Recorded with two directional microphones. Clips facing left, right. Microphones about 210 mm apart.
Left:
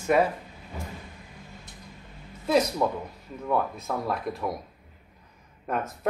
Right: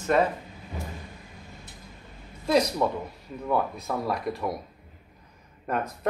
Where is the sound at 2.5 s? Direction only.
Centre (ahead or behind).